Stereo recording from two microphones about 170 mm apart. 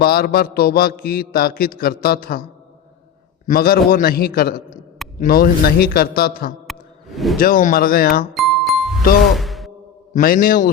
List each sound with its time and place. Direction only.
0.0 s a man's voice: 60° left (ahead or behind)
3.4 s a man's voice: 60° left (ahead or behind)
6.7 s a sound: centre (ahead or behind)
7.3 s a man's voice: 55° left (ahead or behind)
8.3 s music: centre (ahead or behind)
9.3 s a sound: centre (ahead or behind)
10.2 s a man's voice: 55° left (ahead or behind)